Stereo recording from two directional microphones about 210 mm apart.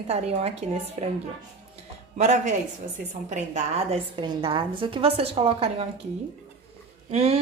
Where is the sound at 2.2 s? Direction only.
35° right (ahead or behind).